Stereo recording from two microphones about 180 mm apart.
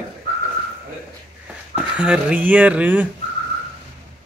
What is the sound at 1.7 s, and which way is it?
Speech, 5° right (ahead or behind).